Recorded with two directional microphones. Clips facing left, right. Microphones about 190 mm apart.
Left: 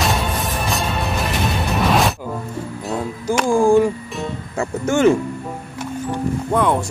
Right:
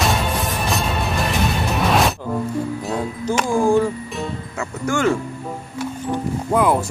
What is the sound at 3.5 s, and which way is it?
Music, 15° left (ahead or behind).